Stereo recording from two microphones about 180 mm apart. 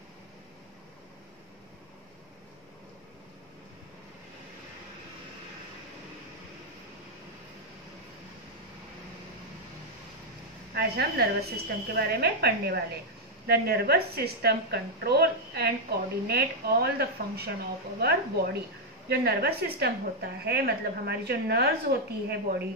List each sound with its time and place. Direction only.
10.7 s a woman's voice: 60° right (ahead or behind)